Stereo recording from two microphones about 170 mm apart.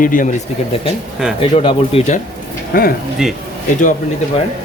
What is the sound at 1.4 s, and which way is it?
Speech, 35° left (ahead or behind).